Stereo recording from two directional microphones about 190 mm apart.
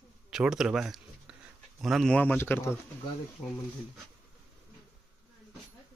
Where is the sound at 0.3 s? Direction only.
5° right (ahead or behind).